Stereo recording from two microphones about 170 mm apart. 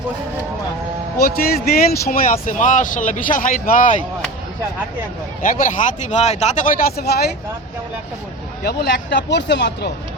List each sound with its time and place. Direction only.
1.2 s speech: 65° left (ahead or behind)
2.3 s speech: 50° left (ahead or behind)
5.4 s speech: 55° left (ahead or behind); by 7.3 s 70° left (ahead or behind)
8.6 s speech: 75° left (ahead or behind)